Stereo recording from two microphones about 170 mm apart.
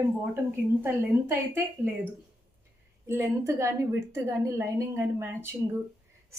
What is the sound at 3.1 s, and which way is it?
A woman's voice, 15° right (ahead or behind).